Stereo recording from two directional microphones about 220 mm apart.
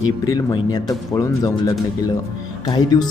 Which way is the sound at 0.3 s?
15° left (ahead or behind).